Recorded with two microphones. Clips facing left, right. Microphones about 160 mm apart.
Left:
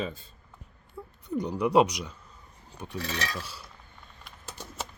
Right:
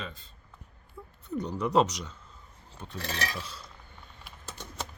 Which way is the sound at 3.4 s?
10° left (ahead or behind).